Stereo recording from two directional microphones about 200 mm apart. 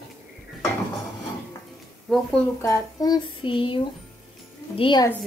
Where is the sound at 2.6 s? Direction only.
15° left (ahead or behind).